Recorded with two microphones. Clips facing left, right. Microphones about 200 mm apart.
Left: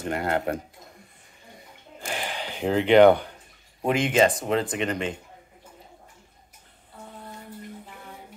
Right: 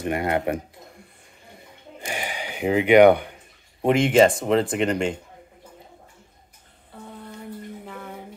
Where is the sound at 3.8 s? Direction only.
30° right (ahead or behind).